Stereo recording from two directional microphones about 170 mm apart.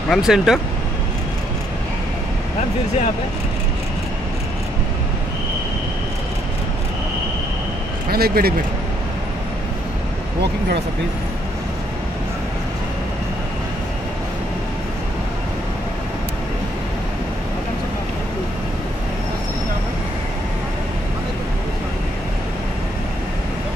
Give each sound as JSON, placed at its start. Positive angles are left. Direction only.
{"t": 0.1, "sound": "speech", "side_deg": 0}
{"t": 8.1, "sound": "speech", "side_deg": -65}